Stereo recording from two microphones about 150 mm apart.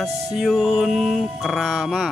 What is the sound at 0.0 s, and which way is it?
Music, centre (ahead or behind).